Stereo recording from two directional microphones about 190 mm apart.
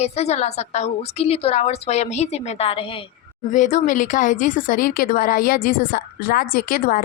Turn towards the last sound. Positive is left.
turn(degrees=50)  # may be behind; listen again after turning